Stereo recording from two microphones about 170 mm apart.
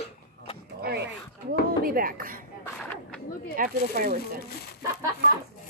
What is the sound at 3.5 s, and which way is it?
Speech, 55° right (ahead or behind).